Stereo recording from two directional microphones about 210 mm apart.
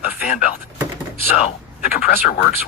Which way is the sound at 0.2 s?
45° left (ahead or behind).